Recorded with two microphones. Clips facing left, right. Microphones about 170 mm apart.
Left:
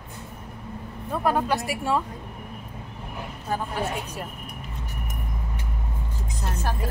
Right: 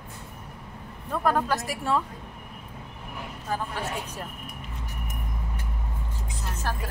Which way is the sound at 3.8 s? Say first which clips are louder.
Left 3 dB; 10° left (ahead or behind).